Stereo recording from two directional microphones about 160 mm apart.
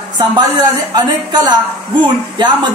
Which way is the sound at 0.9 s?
25° right (ahead or behind).